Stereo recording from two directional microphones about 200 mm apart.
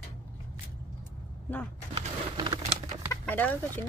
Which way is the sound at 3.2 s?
10° left (ahead or behind).